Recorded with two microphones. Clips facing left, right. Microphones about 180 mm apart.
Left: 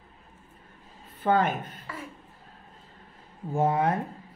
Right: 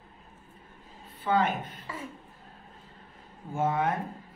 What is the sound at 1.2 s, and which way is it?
Speech, 50° left (ahead or behind).